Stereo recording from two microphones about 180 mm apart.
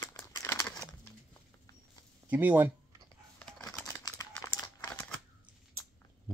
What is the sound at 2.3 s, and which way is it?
Speech, 10° right (ahead or behind).